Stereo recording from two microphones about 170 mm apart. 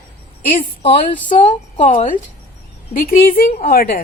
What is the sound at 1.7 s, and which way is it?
A woman's voice, 45° left (ahead or behind).